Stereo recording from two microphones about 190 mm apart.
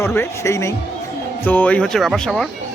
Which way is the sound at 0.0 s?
15° left (ahead or behind).